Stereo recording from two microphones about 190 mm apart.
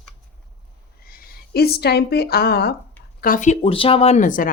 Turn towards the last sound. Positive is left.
turn(degrees=45)  # may be behind; listen again after turning